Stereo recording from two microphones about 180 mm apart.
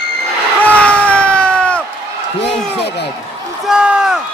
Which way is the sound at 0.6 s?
5° left (ahead or behind).